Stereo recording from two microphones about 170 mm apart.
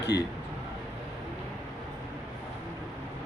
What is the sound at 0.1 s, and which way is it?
Speech, 80° left.